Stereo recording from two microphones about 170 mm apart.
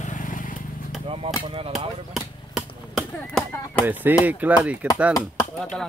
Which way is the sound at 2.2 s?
Centre (ahead or behind).